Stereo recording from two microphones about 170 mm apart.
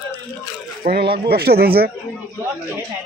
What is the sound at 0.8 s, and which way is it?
Speech, 65° right (ahead or behind).